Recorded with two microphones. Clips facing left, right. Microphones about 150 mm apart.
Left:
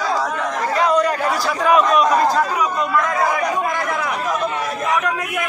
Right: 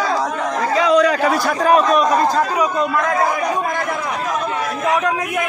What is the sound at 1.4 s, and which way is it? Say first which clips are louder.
Speech: left 1 dB; 40° right (ahead or behind).